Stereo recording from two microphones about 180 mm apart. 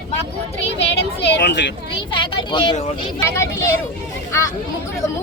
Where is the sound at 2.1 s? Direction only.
25° left (ahead or behind).